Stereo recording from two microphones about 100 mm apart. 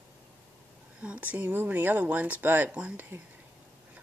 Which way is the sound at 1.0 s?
15° right (ahead or behind).